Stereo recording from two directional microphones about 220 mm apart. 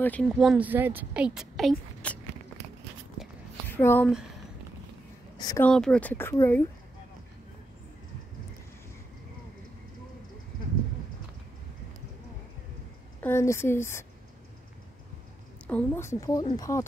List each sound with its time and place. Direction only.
0.0 s a woman's voice: 5° left (ahead or behind)
3.2 s a sound: centre (ahead or behind)
3.6 s speech: 10° left (ahead or behind)
5.4 s speech: 15° left (ahead or behind)
5.7 s speech: 5° left (ahead or behind)
13.2 s speech: 10° left (ahead or behind)
15.6 s speech: 10° left (ahead or behind)